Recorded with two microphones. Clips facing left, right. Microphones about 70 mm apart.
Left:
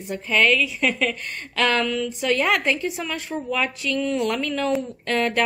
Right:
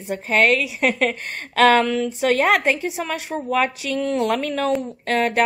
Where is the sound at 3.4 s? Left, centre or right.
Right.